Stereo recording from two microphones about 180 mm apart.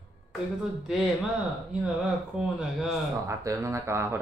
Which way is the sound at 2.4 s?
5° right (ahead or behind).